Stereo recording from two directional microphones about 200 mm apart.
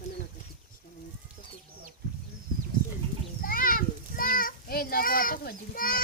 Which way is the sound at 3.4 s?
45° left (ahead or behind).